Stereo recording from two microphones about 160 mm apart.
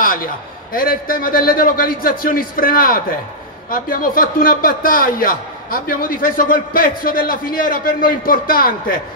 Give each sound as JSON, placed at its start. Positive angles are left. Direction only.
{"t": 0.7, "sound": "a man's voice", "side_deg": 65}